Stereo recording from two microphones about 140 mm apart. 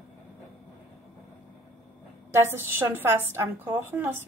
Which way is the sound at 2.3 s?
20° right (ahead or behind).